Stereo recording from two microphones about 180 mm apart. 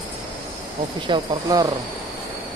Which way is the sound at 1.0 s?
25° right (ahead or behind).